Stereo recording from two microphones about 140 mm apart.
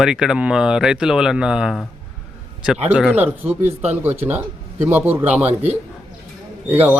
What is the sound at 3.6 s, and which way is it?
Speech, 55° right (ahead or behind).